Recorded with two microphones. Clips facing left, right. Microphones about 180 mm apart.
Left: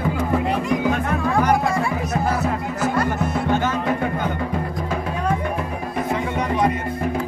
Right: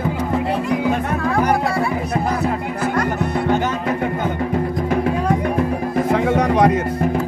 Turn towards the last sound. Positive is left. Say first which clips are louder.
# right 6 dB
turn(degrees=-75)  # may be behind; listen again after turning